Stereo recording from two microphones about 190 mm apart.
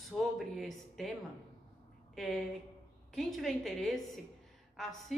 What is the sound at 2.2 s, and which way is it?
A woman's voice, centre (ahead or behind).